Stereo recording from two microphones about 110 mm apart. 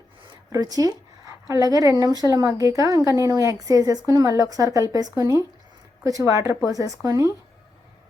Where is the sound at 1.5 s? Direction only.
30° right (ahead or behind).